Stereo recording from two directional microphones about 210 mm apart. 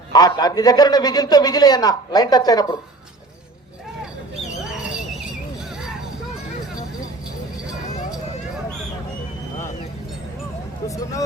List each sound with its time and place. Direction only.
0.1 s a man's voice: 20° left (ahead or behind)
10.8 s speech: 15° left (ahead or behind)